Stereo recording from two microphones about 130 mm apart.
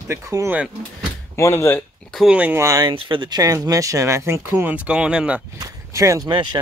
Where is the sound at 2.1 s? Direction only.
10° right (ahead or behind).